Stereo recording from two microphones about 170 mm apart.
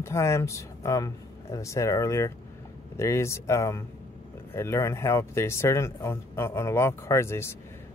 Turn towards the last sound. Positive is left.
turn(degrees=15)  # may be behind; listen again after turning